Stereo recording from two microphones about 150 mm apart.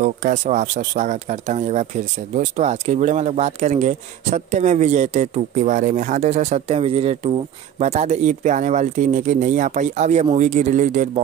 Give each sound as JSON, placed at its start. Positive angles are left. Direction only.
{"t": 0.0, "sound": "speech", "side_deg": -55}